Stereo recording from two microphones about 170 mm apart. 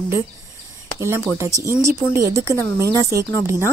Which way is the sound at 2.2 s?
15° right (ahead or behind).